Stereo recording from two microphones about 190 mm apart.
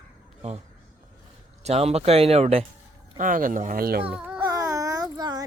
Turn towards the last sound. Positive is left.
turn(degrees=-20)  # may be behind; listen again after turning